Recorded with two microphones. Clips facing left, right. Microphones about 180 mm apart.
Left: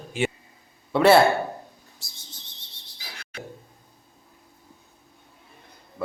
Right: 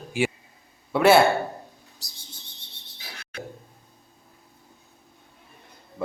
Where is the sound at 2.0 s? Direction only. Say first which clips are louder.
Right 1 dB; 35° right (ahead or behind).